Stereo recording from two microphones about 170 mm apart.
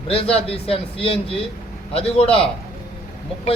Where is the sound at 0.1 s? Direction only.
35° left (ahead or behind).